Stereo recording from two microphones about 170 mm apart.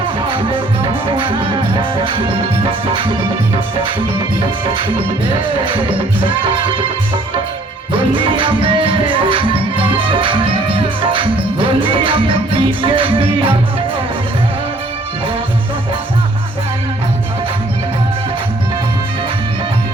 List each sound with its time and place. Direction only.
0.3 s music: 30° right (ahead or behind)
6.2 s music: 30° right (ahead or behind)
7.9 s music: 30° right (ahead or behind)